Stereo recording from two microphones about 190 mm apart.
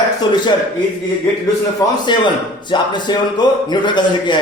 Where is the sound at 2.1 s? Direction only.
25° left (ahead or behind).